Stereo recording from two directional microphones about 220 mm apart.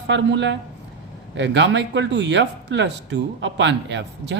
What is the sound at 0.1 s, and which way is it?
Speech, 55° right (ahead or behind).